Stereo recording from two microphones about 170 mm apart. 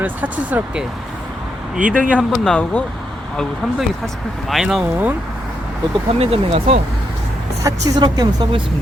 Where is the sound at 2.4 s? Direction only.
5° left (ahead or behind).